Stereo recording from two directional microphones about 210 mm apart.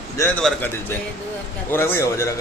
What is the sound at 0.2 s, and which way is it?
Speech, 5° left (ahead or behind).